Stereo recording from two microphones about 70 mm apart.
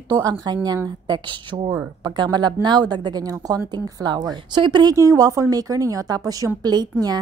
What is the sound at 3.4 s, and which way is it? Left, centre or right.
Speech, right.